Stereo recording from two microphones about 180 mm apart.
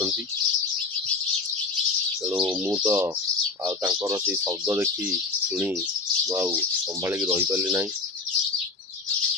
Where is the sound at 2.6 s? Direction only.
10° right (ahead or behind).